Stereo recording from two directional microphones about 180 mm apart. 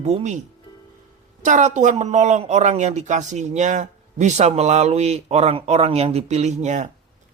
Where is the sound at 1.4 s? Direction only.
45° right (ahead or behind).